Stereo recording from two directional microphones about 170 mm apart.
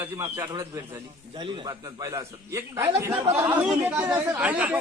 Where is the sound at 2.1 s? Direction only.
15° right (ahead or behind).